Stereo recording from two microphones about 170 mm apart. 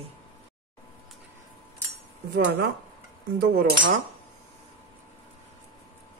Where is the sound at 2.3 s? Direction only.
75° right (ahead or behind).